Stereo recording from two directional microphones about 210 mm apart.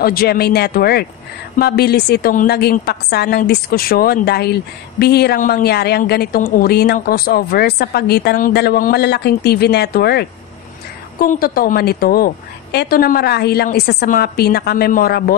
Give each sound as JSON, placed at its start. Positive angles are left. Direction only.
{"t": 0.0, "sound": "a woman's voice", "side_deg": 45}